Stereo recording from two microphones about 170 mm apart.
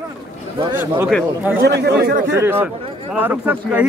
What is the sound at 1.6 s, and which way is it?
Speech, 80° right.